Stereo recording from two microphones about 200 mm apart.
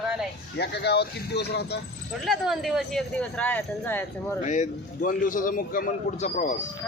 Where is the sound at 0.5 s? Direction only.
55° left (ahead or behind).